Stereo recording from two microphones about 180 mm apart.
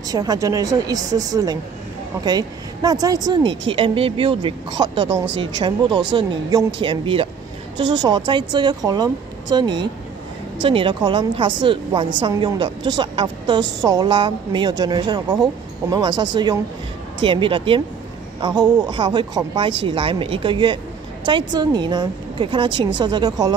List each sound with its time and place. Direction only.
0.1 s a woman's voice: 20° right (ahead or behind)